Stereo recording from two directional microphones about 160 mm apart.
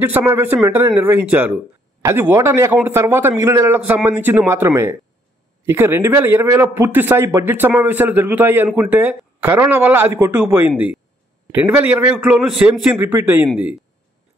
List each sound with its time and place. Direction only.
0.0 s a man's voice: 15° right (ahead or behind)